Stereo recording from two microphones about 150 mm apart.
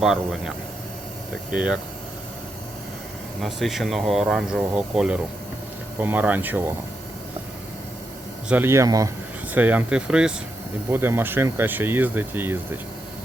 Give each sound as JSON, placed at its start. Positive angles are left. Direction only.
{"t": 0.0, "sound": "speech", "side_deg": 0}
{"t": 3.4, "sound": "speech", "side_deg": 0}
{"t": 8.4, "sound": "speech", "side_deg": -15}
{"t": 9.6, "sound": "speech", "side_deg": -10}